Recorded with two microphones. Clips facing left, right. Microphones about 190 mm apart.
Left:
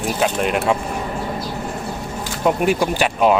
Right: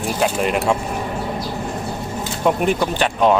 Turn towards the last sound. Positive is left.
turn(degrees=10)  # may be behind; listen again after turning